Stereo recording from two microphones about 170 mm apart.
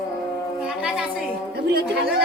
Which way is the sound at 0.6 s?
5° right (ahead or behind).